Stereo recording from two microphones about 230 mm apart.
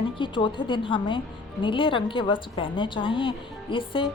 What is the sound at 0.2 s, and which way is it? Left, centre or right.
A woman's voice, left.